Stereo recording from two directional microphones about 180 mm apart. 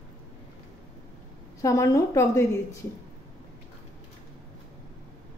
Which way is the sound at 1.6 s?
15° left (ahead or behind).